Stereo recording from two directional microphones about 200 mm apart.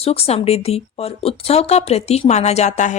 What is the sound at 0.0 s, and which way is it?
Speech, 30° left (ahead or behind).